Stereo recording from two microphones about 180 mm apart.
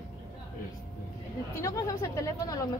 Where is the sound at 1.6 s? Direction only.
15° left (ahead or behind).